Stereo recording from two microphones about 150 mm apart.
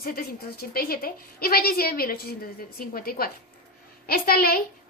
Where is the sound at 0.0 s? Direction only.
80° left.